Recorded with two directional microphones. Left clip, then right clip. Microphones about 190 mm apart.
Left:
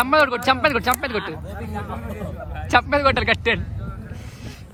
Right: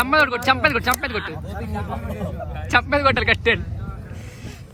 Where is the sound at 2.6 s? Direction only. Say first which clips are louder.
Even; 10° left (ahead or behind).